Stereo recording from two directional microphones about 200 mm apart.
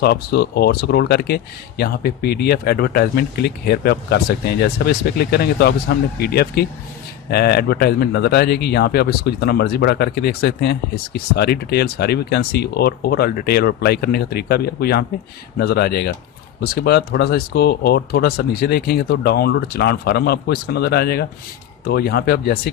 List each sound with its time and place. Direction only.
0.0 s speech: 50° left (ahead or behind)